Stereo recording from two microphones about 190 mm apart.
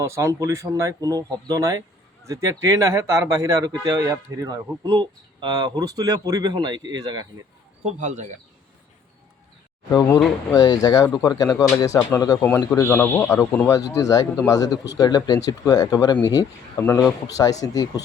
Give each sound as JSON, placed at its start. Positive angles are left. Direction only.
{"t": 0.0, "sound": "speech", "side_deg": -15}
{"t": 7.9, "sound": "speech", "side_deg": -40}
{"t": 9.9, "sound": "a man's voice", "side_deg": 15}